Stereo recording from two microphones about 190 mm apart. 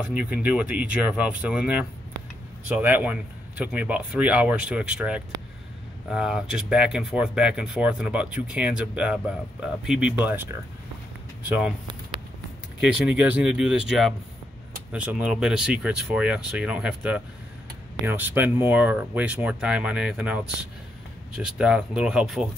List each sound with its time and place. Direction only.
0.0 s speech: 5° right (ahead or behind)
11.4 s speech: 10° right (ahead or behind)
12.8 s speech: 5° right (ahead or behind)
21.5 s speech: 5° right (ahead or behind)